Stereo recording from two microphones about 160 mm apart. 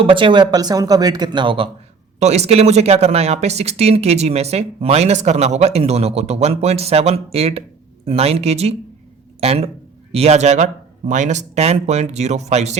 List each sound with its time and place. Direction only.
0.0 s speech: 30° right (ahead or behind)
2.1 s speech: 45° right (ahead or behind)